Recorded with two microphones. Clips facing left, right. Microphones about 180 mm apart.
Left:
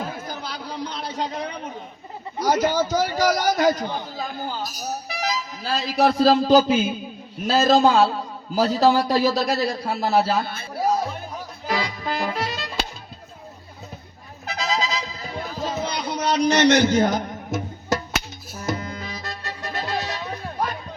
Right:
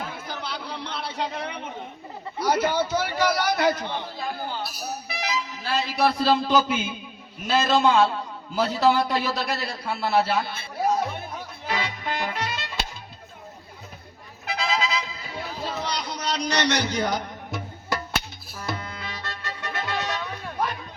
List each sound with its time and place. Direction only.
0.3 s a sound: 40° left (ahead or behind)
2.4 s a man's voice: 40° left (ahead or behind)
11.7 s music: 35° left (ahead or behind)
14.5 s music: 40° left (ahead or behind)